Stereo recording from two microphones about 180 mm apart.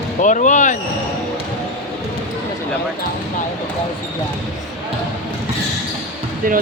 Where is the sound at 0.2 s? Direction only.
45° left (ahead or behind).